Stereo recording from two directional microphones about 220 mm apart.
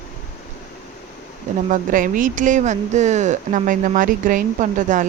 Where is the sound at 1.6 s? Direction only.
35° right (ahead or behind).